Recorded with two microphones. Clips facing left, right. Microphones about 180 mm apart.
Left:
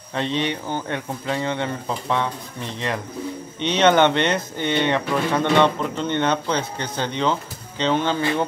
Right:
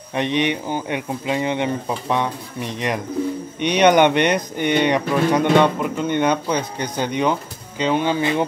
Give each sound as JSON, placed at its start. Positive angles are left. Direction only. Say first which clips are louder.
{"t": 0.1, "sound": "speech", "louder": "right 3 dB", "side_deg": -15}